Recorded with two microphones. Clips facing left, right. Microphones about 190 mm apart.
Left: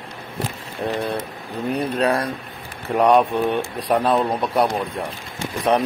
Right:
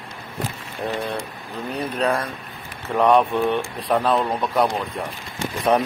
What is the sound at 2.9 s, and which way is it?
Speech, 15° left (ahead or behind).